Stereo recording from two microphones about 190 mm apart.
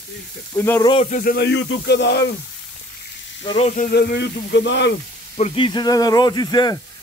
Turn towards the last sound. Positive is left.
turn(degrees=20)  # may be behind; listen again after turning